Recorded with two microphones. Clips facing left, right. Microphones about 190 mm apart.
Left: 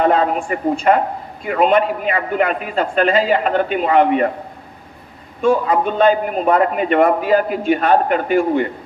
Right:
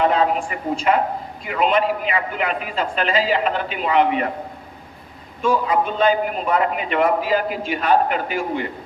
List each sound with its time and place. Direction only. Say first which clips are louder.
0.0 s a man's voice: left 3 dB; 45° left (ahead or behind)
5.5 s a man's voice: left 4 dB; 50° left (ahead or behind)